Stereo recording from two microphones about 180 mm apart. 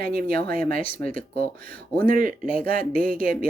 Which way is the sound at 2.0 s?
50° right (ahead or behind).